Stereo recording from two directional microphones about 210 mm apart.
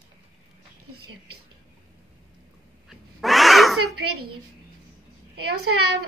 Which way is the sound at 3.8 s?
90° right.